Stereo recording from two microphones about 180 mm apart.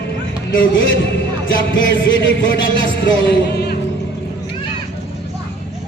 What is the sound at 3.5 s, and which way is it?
Music, 65° left (ahead or behind).